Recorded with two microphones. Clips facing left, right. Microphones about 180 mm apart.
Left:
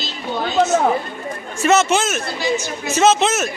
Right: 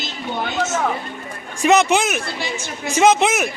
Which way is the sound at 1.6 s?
15° right (ahead or behind).